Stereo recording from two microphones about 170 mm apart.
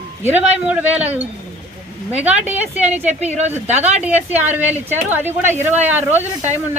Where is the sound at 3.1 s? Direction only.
40° right (ahead or behind).